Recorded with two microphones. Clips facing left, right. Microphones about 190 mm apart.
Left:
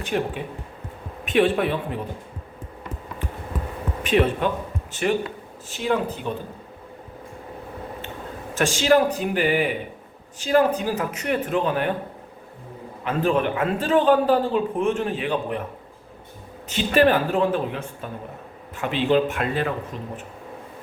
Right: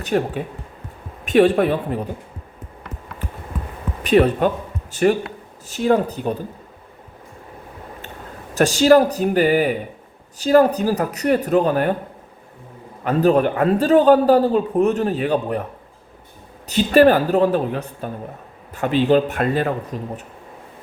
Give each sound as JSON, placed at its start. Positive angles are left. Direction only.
{"t": 0.0, "sound": "a woman's voice", "side_deg": -45}
{"t": 4.0, "sound": "a man's voice", "side_deg": -40}
{"t": 8.5, "sound": "a man's voice", "side_deg": -40}
{"t": 13.1, "sound": "a man's voice", "side_deg": -40}
{"t": 16.6, "sound": "a man's voice", "side_deg": -40}